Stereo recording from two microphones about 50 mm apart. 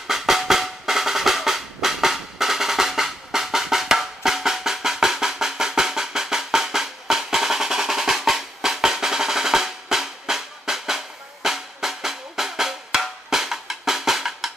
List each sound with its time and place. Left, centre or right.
0.0 s percussion: centre
11.4 s drum: centre